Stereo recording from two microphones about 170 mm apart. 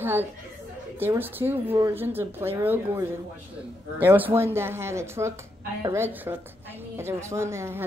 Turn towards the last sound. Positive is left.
turn(degrees=-15)  # may be behind; listen again after turning